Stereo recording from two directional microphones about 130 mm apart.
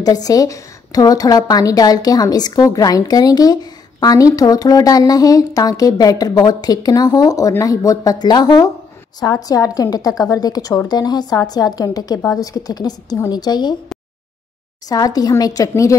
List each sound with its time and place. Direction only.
0.0 s a woman's voice: 30° left (ahead or behind)
14.9 s a woman's voice: 30° left (ahead or behind)